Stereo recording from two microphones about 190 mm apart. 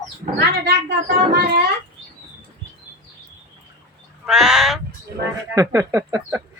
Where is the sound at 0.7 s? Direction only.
60° right (ahead or behind).